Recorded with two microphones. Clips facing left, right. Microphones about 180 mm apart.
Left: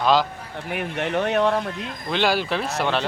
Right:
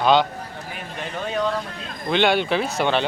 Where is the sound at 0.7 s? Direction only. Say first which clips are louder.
Left 10 dB; 70° left (ahead or behind).